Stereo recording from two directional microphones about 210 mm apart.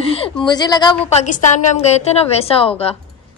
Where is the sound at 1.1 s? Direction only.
35° left (ahead or behind).